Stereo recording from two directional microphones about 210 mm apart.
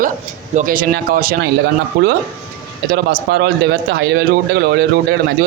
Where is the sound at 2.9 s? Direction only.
50° right (ahead or behind).